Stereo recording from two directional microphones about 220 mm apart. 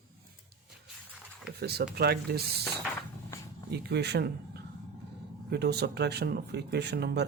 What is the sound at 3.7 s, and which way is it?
Speech, 50° right (ahead or behind).